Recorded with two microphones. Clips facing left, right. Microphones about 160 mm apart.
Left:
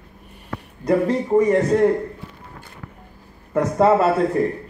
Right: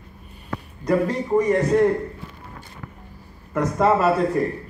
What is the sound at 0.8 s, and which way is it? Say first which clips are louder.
Speech: left 2 dB; 25° left (ahead or behind).